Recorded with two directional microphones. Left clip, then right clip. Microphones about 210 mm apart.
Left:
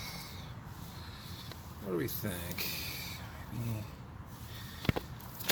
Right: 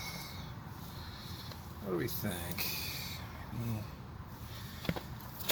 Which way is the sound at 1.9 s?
40° left (ahead or behind).